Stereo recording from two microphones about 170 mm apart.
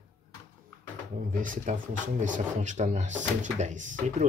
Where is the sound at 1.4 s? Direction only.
50° right (ahead or behind).